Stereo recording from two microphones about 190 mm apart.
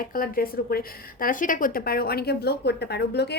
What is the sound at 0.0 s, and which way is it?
A woman's voice, 50° left (ahead or behind).